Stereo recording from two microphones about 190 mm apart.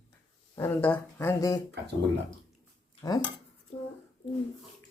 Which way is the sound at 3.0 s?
20° left (ahead or behind).